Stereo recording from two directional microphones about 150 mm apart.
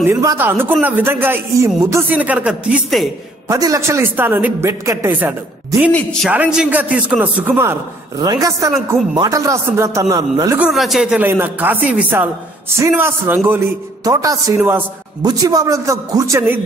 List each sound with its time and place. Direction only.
0.0 s speech: 20° right (ahead or behind); by 3.1 s 5° right (ahead or behind)
3.4 s speech: 20° right (ahead or behind)
5.8 s a man's voice: 5° left (ahead or behind)
6.3 s speech: 5° right (ahead or behind)
8.2 s speech: 25° right (ahead or behind)
10.6 s a man's voice: centre (ahead or behind)
14.0 s speech: 25° right (ahead or behind)